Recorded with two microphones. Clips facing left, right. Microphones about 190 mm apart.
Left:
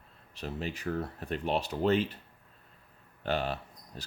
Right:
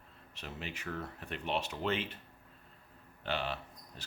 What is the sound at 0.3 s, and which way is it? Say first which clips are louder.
Speech: left 7 dB; 35° left (ahead or behind).